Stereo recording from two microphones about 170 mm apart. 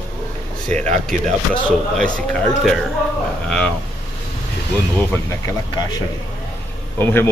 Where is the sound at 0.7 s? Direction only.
40° right (ahead or behind).